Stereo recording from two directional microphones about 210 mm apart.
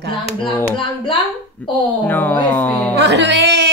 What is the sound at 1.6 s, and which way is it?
Speech, 5° left (ahead or behind).